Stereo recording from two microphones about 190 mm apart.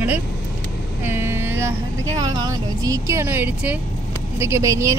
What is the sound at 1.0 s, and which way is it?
Speech, 10° right (ahead or behind).